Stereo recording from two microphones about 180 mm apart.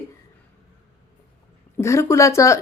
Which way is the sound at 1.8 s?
15° left (ahead or behind).